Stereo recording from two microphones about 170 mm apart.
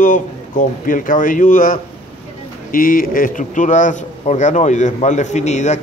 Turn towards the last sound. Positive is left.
turn(degrees=45)  # may be behind; listen again after turning